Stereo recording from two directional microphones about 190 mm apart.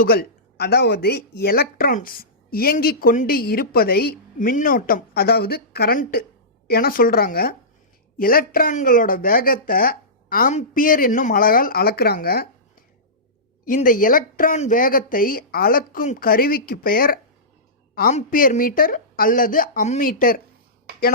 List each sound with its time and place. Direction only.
0.0 s speech: 55° left (ahead or behind)
13.7 s speech: 45° left (ahead or behind)